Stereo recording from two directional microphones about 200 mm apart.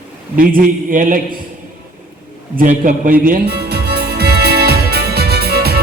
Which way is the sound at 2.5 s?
45° right (ahead or behind).